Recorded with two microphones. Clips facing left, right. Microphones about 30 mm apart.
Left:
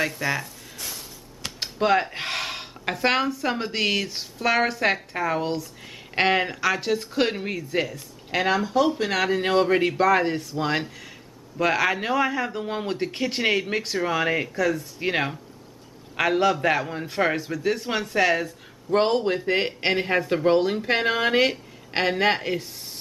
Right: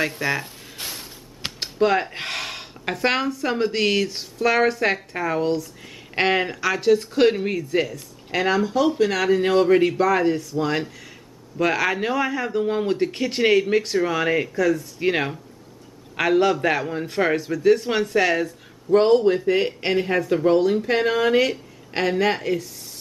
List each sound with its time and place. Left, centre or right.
0.1 s speech: centre
0.7 s a sound: right
1.6 s speech: centre
11.5 s speech: centre
18.9 s speech: centre
19.4 s a woman's voice: left